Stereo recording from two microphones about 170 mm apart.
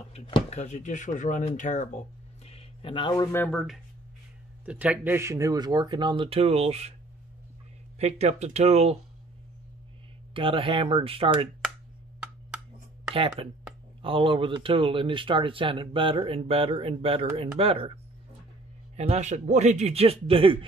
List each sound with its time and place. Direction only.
0.1 s speech: 40° left (ahead or behind)
3.3 s speech: 5° left (ahead or behind); by 7.0 s 40° right (ahead or behind)
8.0 s speech: 40° right (ahead or behind)
10.3 s speech: 30° right (ahead or behind)
13.1 s speech: 35° right (ahead or behind)
18.9 s speech: 40° right (ahead or behind)